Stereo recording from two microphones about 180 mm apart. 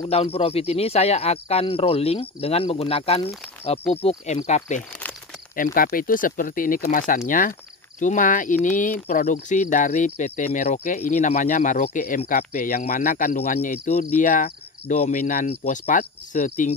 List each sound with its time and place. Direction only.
0.1 s speech: 35° left (ahead or behind)
5.8 s speech: 50° left (ahead or behind)
15.4 s speech: 35° left (ahead or behind)